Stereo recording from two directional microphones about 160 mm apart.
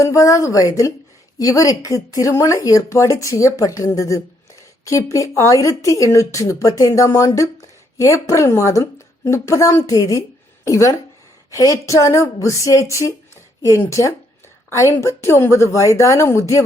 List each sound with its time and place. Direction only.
0.0 s a woman's voice: 20° left (ahead or behind)